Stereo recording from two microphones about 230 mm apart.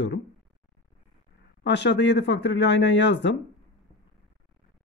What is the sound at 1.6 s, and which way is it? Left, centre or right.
Speech, left.